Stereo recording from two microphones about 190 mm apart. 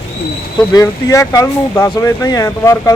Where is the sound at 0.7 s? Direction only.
15° left (ahead or behind).